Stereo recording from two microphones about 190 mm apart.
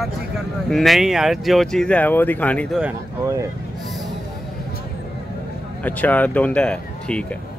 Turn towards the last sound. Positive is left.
turn(degrees=5)  # may be behind; listen again after turning